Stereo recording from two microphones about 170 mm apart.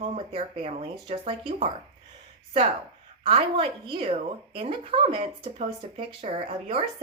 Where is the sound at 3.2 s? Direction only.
35° right (ahead or behind).